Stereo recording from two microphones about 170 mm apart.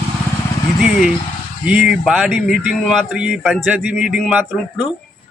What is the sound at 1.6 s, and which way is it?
Speech, 5° right (ahead or behind).